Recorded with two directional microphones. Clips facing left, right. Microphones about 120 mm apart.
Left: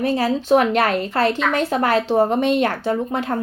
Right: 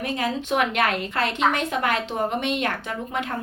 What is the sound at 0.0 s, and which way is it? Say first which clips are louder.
Speech: left 7 dB; 35° left (ahead or behind).